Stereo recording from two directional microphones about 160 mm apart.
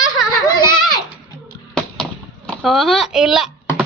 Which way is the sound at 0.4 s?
25° left (ahead or behind).